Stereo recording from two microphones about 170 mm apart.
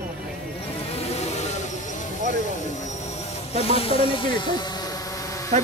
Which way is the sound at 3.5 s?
35° left (ahead or behind).